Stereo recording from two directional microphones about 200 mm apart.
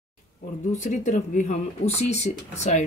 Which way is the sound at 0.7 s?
35° left (ahead or behind).